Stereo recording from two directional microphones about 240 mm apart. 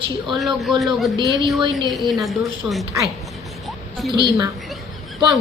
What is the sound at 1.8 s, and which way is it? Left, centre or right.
A woman's voice, centre.